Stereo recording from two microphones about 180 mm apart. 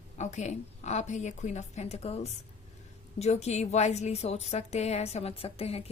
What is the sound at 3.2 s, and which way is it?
Speech, 40° left (ahead or behind).